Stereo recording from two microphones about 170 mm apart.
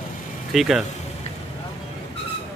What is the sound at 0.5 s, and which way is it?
Speech, centre (ahead or behind).